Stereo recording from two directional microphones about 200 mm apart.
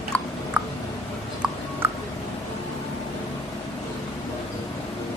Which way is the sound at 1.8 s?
10° right (ahead or behind).